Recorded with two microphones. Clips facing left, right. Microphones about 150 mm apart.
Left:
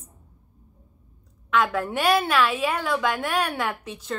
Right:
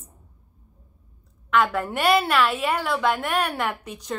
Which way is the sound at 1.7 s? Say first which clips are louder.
Right 1 dB; 10° right (ahead or behind).